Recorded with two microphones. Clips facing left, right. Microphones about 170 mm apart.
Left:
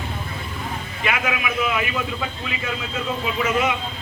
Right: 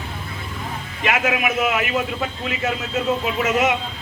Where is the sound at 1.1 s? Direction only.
45° right (ahead or behind).